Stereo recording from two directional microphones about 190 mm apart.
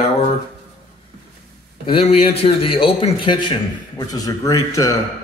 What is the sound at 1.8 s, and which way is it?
A man's voice, 30° left (ahead or behind).